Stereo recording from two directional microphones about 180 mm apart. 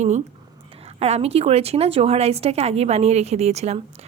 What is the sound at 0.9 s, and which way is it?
A woman's voice, 35° right (ahead or behind).